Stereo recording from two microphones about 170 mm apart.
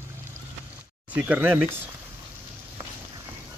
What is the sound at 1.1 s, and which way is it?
Speech, 10° right (ahead or behind).